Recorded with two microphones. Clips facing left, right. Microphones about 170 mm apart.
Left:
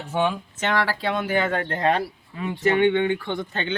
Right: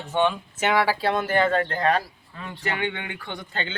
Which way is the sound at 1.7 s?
25° left (ahead or behind).